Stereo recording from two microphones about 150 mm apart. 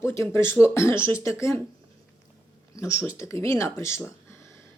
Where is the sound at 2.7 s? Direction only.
20° left (ahead or behind).